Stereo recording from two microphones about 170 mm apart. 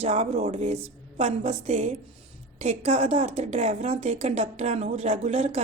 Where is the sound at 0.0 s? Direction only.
40° right (ahead or behind).